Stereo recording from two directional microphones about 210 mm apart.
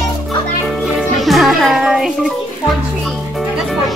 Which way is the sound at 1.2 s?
Centre (ahead or behind).